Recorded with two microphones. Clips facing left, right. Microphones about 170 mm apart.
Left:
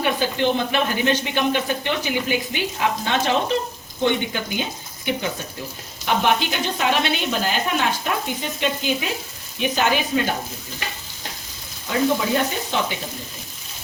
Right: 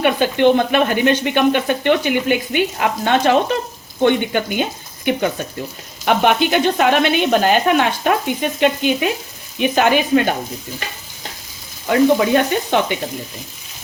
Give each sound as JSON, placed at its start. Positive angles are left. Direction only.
{"t": 0.0, "sound": "speech", "side_deg": -60}
{"t": 11.9, "sound": "speech", "side_deg": -65}